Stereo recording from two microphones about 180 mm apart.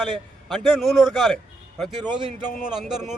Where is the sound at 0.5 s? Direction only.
Centre (ahead or behind).